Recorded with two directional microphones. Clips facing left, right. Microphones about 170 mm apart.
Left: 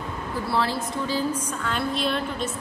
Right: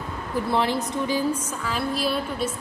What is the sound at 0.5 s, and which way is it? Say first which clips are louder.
Speech: right 2 dB; 20° right (ahead or behind).